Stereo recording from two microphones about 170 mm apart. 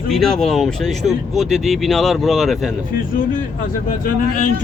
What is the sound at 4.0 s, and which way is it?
Speech, 50° left (ahead or behind).